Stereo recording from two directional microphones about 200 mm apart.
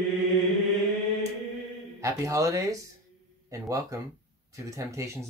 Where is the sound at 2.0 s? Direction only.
15° right (ahead or behind).